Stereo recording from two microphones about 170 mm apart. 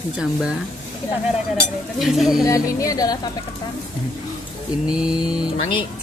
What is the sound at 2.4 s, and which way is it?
Music, 20° left (ahead or behind).